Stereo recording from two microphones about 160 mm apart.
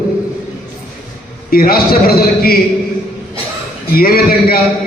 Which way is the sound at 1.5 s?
65° left (ahead or behind).